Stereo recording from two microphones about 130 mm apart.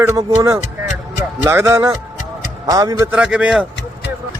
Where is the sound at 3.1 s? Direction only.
5° right (ahead or behind).